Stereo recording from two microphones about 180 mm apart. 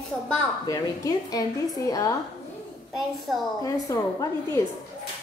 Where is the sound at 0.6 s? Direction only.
20° left (ahead or behind).